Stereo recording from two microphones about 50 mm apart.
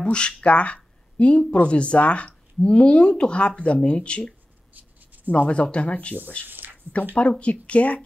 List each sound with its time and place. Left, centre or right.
0.0 s speech: centre
4.7 s writing: right
5.3 s speech: left
6.4 s a sound: right
7.2 s speech: left